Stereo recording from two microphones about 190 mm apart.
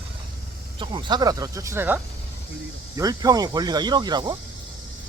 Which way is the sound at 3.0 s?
20° right (ahead or behind).